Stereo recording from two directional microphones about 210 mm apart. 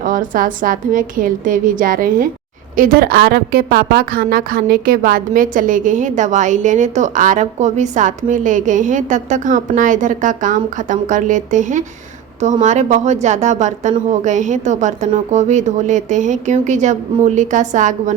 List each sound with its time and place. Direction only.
0.0 s a woman's voice: 40° right (ahead or behind)